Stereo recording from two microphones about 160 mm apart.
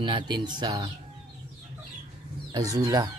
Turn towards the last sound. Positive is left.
turn(degrees=-25)  # may be behind; listen again after turning